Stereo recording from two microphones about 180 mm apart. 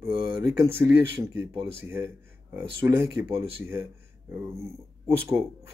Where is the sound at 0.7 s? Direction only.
15° right (ahead or behind).